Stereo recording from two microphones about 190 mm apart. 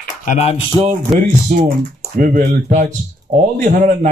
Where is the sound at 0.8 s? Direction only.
40° right (ahead or behind).